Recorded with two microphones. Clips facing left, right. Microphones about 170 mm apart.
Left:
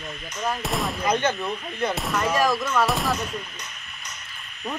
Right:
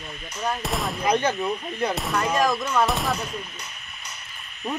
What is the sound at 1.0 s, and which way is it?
Speech, 10° right (ahead or behind).